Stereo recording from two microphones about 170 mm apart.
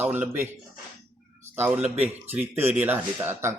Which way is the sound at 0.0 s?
10° right (ahead or behind).